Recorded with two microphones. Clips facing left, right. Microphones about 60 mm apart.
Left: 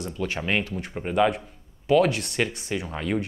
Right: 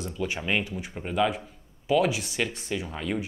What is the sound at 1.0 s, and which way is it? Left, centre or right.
Speech, centre.